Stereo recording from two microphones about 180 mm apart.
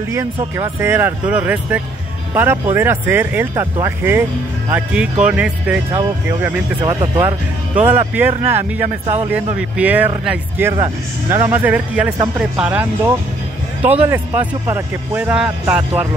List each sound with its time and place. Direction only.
0.6 s speech: 15° right (ahead or behind)
6.8 s speech: 20° right (ahead or behind)
9.0 s speech: 30° right (ahead or behind)
9.6 s speech: 10° right (ahead or behind)